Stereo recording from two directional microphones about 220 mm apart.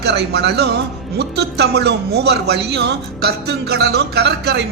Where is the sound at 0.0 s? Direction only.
50° right (ahead or behind).